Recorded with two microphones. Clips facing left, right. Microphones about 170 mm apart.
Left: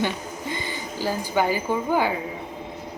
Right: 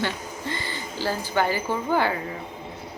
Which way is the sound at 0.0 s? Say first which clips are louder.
Left 2 dB; 15° left (ahead or behind).